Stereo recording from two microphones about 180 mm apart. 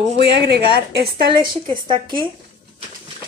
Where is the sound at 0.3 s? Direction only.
65° right (ahead or behind).